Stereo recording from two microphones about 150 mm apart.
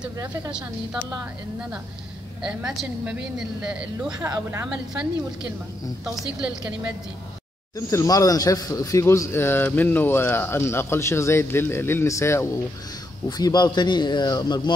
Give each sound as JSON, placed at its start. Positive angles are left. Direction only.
{"t": 0.5, "sound": "a woman's voice", "side_deg": -5}
{"t": 2.4, "sound": "a woman's voice", "side_deg": -5}
{"t": 4.3, "sound": "a woman's voice", "side_deg": -20}
{"t": 4.6, "sound": "a woman's voice", "side_deg": -5}
{"t": 7.7, "sound": "speech", "side_deg": 20}